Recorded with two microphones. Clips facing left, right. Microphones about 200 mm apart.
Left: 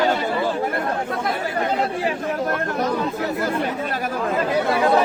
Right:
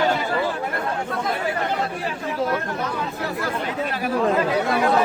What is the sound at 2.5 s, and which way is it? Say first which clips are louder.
Speech: left 3 dB; 40° left (ahead or behind).